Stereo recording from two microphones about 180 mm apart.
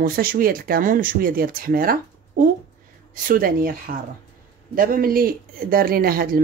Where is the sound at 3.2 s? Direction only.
50° right (ahead or behind).